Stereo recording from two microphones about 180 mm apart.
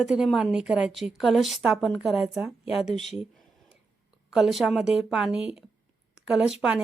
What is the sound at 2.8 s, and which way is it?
Speech, 40° left (ahead or behind).